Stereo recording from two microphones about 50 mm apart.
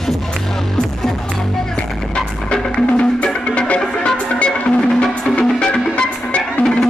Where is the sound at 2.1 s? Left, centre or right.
Left.